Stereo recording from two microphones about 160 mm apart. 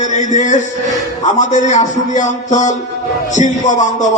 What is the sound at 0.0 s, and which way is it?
A man's voice, 50° left (ahead or behind).